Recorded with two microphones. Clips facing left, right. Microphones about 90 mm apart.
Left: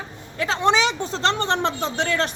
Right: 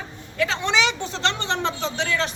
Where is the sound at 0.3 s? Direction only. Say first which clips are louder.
Left 3 dB; 35° left (ahead or behind).